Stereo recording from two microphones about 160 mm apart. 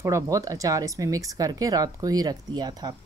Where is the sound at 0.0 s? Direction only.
20° right (ahead or behind).